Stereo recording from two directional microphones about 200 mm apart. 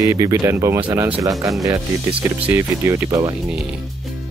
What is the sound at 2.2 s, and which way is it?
Speech, 10° right (ahead or behind).